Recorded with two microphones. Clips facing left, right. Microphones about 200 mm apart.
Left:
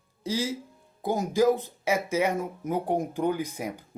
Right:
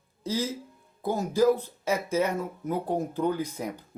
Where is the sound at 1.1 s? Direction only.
15° left (ahead or behind).